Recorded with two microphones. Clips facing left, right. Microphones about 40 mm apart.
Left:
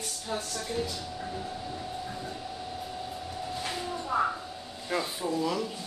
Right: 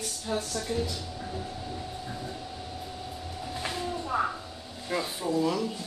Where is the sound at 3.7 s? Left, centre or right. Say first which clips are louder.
Right 1 dB; centre.